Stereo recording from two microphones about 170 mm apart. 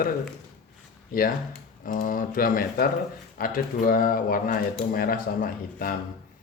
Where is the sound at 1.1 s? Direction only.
55° left (ahead or behind).